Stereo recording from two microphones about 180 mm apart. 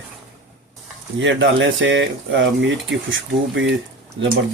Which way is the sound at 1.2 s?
90° right.